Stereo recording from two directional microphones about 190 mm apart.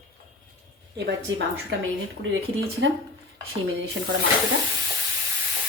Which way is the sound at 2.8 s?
80° right.